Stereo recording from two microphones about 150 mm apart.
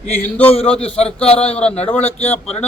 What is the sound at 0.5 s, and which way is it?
Speech, 40° left (ahead or behind).